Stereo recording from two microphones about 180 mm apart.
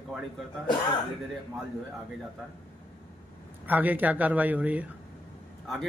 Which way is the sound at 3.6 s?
10° right (ahead or behind).